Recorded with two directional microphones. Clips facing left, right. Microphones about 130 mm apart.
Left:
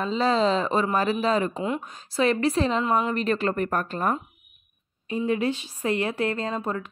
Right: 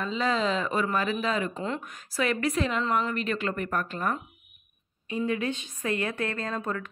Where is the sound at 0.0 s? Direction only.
35° left (ahead or behind).